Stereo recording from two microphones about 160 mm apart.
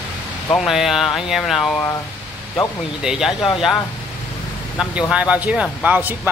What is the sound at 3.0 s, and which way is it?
Speech, 5° right (ahead or behind).